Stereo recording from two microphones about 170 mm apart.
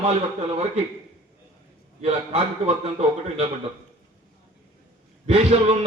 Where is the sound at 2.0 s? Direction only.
35° right (ahead or behind).